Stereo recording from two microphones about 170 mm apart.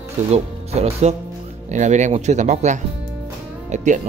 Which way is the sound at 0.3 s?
40° right (ahead or behind).